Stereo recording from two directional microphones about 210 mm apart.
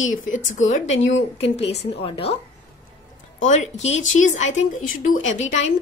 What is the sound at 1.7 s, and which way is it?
Speech, 25° left (ahead or behind).